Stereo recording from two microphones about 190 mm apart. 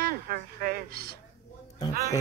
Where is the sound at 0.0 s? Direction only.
50° right (ahead or behind).